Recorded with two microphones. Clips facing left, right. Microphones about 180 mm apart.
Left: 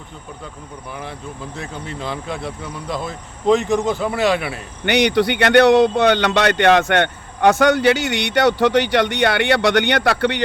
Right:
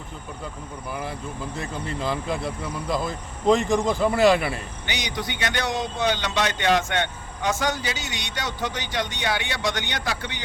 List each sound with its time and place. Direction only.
1.5 s speech: centre (ahead or behind)
4.9 s a man's voice: 65° left (ahead or behind)